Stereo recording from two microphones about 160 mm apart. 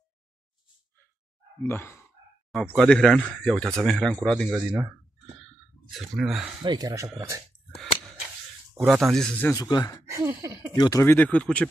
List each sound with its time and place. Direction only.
1.6 s speech: 15° left (ahead or behind)
2.7 s speech: centre (ahead or behind)
5.9 s speech: centre (ahead or behind)
6.6 s speech: 25° right (ahead or behind)
8.8 s speech: centre (ahead or behind)
9.5 s speech: 25° left (ahead or behind)
10.0 s speech: 15° right (ahead or behind)
10.8 s speech: 20° left (ahead or behind)